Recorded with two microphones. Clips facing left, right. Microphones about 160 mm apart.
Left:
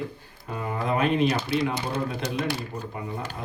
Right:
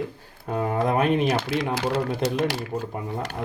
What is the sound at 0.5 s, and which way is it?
Speech, 50° right (ahead or behind).